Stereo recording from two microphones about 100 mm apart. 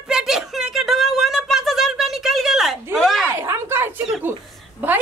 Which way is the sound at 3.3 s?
25° right (ahead or behind).